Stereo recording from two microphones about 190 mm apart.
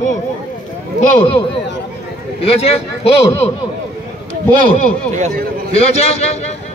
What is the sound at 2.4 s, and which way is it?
Speech, 30° left (ahead or behind).